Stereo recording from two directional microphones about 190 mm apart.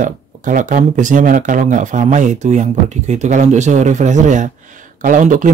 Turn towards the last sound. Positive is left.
turn(degrees=-40)  # may be behind; listen again after turning